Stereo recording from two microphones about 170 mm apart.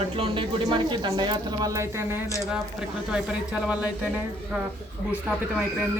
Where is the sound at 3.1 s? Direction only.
5° right (ahead or behind).